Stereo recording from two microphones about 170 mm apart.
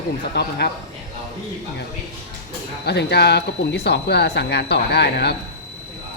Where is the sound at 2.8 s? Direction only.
85° left.